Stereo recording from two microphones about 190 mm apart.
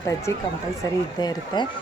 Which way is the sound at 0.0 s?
15° left (ahead or behind).